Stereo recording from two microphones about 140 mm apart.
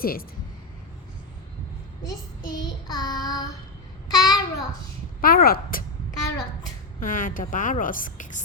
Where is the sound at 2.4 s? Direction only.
30° left (ahead or behind).